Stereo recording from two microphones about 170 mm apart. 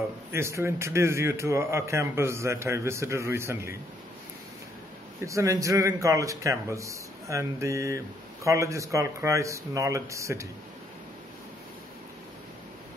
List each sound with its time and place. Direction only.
0.3 s a man's voice: 15° right (ahead or behind)
5.2 s a man's voice: 20° right (ahead or behind)